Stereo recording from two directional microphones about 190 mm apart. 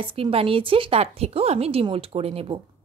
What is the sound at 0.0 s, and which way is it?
Speech, 30° right (ahead or behind).